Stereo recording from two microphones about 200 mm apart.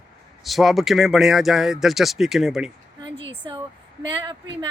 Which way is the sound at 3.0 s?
25° right (ahead or behind).